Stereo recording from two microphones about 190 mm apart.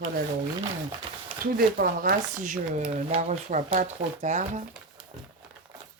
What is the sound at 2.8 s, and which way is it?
Speech, 30° right (ahead or behind).